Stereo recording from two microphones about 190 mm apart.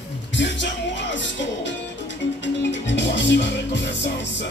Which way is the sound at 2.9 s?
70° left (ahead or behind).